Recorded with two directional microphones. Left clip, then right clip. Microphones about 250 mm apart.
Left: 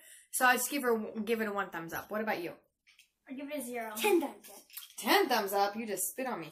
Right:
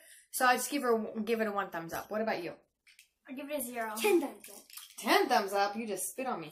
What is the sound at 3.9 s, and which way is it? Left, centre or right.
Speech, centre.